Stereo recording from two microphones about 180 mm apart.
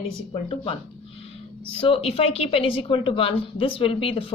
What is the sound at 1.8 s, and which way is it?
A woman's voice, 30° left (ahead or behind).